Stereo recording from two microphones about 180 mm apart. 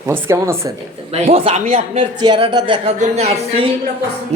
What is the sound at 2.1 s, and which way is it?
Speech, 25° right (ahead or behind).